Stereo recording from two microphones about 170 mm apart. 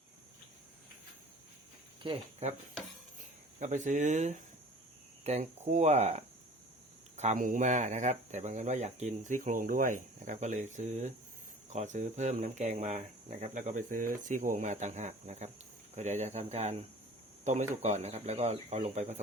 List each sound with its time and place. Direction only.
2.0 s speech: 40° right (ahead or behind)
3.6 s speech: 45° right (ahead or behind)